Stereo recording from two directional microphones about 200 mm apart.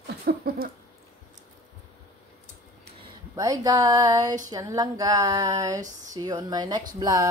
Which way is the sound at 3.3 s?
15° right (ahead or behind).